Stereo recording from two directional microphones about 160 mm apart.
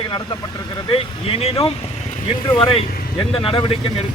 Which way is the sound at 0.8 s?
35° left (ahead or behind).